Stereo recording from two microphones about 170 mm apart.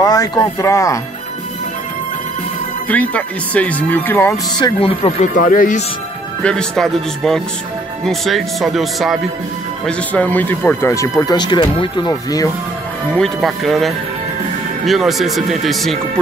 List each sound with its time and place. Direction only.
0.0 s speech: 20° left (ahead or behind)
2.9 s speech: 10° left (ahead or behind)
4.6 s speech: 30° left (ahead or behind)
5.3 s speech: 55° left (ahead or behind)
6.4 s speech: 5° left (ahead or behind); by 12.4 s 20° left (ahead or behind)
13.1 s speech: centre (ahead or behind)